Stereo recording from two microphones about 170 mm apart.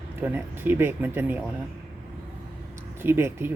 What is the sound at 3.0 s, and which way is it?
Speech, 15° right (ahead or behind).